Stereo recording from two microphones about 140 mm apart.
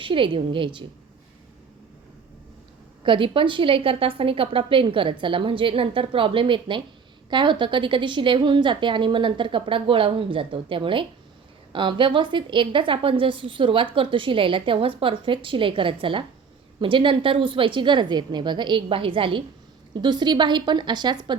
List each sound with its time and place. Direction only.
0.0 s a woman's voice: 40° right (ahead or behind)
3.0 s a woman's voice: 35° right (ahead or behind)